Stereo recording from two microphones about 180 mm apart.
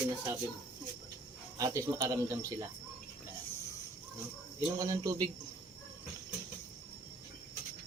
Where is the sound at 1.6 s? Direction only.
15° right (ahead or behind).